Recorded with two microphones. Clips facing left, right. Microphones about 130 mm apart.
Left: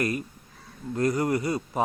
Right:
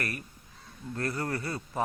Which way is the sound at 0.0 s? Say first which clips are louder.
Left 9 dB; 20° left (ahead or behind).